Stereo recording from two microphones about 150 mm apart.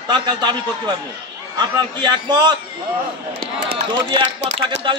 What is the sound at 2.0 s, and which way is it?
Speech, 30° right (ahead or behind).